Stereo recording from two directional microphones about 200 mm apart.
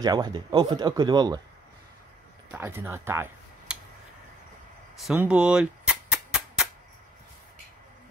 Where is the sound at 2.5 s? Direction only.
10° right (ahead or behind).